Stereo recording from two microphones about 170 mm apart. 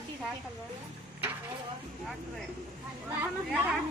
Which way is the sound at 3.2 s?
10° right (ahead or behind).